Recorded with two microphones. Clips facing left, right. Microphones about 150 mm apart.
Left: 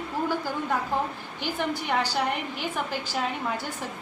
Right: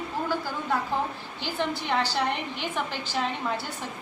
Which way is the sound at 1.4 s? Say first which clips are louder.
Left 1 dB; 10° left (ahead or behind).